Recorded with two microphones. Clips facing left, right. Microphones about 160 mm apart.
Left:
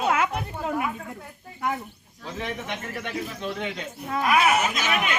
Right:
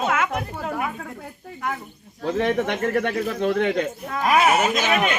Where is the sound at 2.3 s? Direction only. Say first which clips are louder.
Right 10 dB; 55° right (ahead or behind).